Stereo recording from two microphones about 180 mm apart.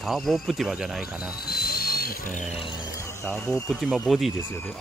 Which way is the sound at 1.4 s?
60° left (ahead or behind).